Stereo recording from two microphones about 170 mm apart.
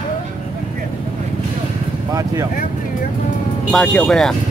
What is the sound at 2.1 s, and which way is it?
Speech, 20° right (ahead or behind).